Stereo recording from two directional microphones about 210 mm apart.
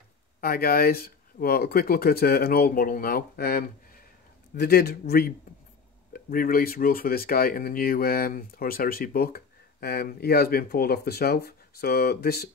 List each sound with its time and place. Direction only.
0.4 s speech: 45° left (ahead or behind)